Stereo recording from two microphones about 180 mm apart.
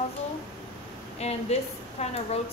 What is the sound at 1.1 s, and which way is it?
Speech, 35° left (ahead or behind).